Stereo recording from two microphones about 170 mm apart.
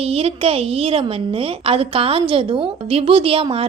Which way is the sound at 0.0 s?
35° right (ahead or behind).